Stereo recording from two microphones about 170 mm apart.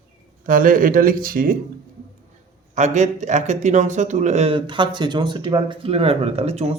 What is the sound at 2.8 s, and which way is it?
Speech, 45° right (ahead or behind).